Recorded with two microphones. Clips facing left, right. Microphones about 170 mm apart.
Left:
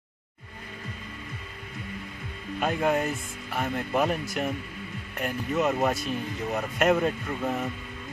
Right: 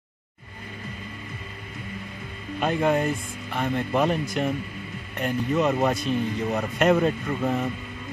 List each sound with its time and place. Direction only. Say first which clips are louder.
2.6 s speech: right 3 dB; 5° left (ahead or behind)